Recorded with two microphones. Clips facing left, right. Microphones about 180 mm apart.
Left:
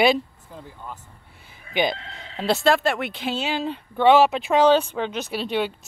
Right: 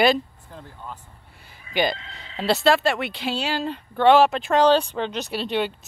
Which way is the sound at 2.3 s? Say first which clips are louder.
Right 1 dB; centre (ahead or behind).